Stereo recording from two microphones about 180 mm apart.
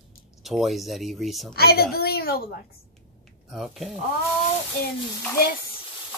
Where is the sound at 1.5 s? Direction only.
60° left (ahead or behind).